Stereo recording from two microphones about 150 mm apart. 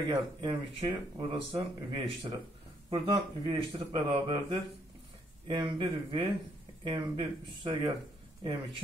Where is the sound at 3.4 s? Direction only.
35° right (ahead or behind).